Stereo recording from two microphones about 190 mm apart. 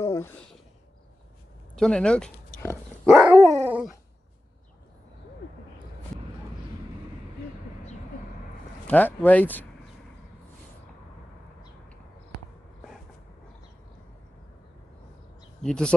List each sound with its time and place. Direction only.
0.0 s a sound: 15° left (ahead or behind)
1.8 s speech: 5° left (ahead or behind)
3.1 s dog: 5° right (ahead or behind)
8.8 s speech: 10° left (ahead or behind)
15.6 s speech: 5° left (ahead or behind)